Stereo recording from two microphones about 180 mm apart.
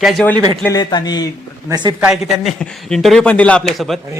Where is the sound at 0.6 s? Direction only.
20° left (ahead or behind).